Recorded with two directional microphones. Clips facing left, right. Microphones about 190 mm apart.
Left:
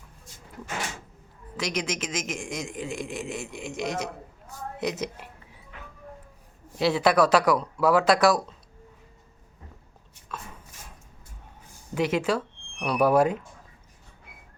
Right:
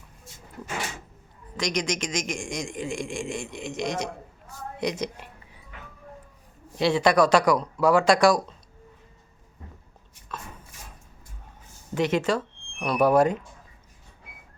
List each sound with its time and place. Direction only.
1.5 s a man's voice: 5° left (ahead or behind)
6.7 s a man's voice: 5° left (ahead or behind)
10.3 s a sound: 5° left (ahead or behind)
11.9 s speech: 10° left (ahead or behind)